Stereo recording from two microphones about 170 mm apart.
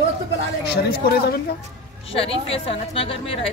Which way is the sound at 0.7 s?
70° left (ahead or behind).